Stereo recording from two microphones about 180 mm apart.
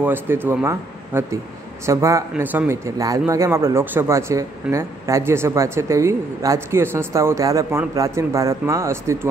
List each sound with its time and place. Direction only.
0.0 s a man's voice: 10° right (ahead or behind)